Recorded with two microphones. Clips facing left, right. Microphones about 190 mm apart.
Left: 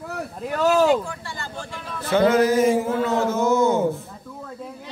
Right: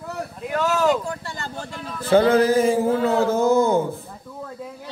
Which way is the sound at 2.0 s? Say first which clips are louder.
Right 2 dB; 30° right (ahead or behind).